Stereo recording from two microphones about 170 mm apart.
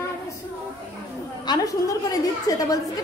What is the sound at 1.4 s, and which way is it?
A woman's voice, 20° left (ahead or behind).